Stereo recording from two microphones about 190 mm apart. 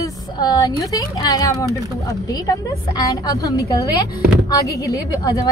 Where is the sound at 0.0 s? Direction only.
20° left (ahead or behind).